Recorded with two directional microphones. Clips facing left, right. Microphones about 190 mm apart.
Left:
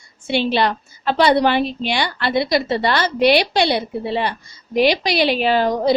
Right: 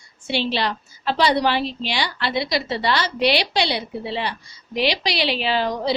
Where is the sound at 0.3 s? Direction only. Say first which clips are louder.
Left 5 dB; 55° left (ahead or behind).